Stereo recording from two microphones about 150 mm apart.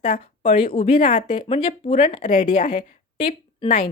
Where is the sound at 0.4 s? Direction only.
35° left (ahead or behind).